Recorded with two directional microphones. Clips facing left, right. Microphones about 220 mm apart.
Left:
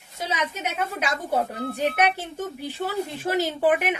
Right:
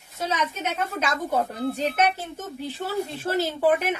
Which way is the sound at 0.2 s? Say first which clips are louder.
Right 1 dB; 10° left (ahead or behind).